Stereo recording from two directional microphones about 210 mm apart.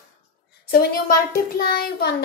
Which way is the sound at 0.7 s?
45° left (ahead or behind).